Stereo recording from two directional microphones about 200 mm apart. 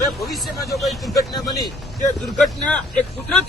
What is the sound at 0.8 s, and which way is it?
Speech, centre (ahead or behind).